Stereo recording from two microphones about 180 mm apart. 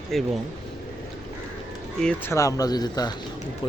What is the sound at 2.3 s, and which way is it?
Speech, 20° left (ahead or behind).